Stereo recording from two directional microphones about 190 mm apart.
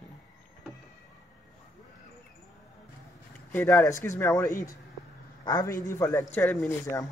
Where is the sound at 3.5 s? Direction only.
15° left (ahead or behind).